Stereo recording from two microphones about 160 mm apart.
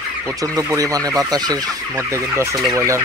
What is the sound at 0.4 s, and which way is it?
Speech, 20° right (ahead or behind).